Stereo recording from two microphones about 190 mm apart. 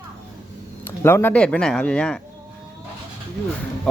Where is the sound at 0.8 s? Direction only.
10° left (ahead or behind).